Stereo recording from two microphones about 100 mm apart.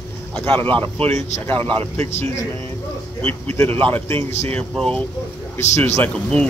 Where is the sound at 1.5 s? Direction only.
65° right (ahead or behind).